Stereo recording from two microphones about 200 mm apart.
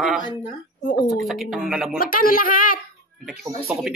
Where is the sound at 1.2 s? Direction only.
Centre (ahead or behind).